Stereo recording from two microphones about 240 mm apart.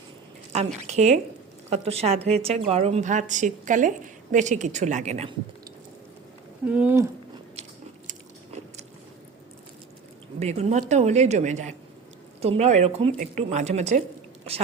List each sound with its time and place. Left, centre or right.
0.5 s a woman's voice: right
6.7 s speech: centre
10.4 s a woman's voice: right